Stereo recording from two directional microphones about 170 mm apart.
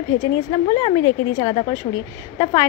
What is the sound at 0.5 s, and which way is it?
A woman's voice, 35° left (ahead or behind).